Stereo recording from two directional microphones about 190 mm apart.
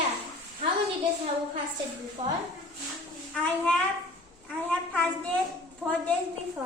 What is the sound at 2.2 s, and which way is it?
Speech, 35° right (ahead or behind).